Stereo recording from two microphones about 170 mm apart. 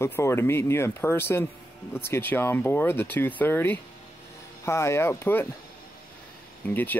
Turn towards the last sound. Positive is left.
turn(degrees=10)  # may be behind; listen again after turning